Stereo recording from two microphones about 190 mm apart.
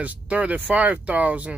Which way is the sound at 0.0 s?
5° right (ahead or behind).